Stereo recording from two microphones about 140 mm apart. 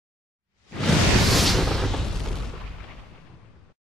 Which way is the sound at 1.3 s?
Centre (ahead or behind).